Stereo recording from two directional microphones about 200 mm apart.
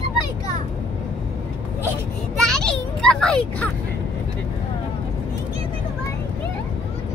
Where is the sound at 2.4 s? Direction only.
5° left (ahead or behind).